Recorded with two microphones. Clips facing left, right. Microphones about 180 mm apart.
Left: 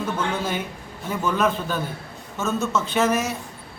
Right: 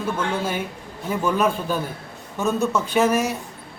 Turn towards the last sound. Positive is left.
turn(degrees=-10)  # may be behind; listen again after turning